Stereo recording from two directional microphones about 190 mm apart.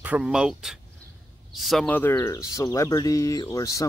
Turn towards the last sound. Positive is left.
turn(degrees=15)  # may be behind; listen again after turning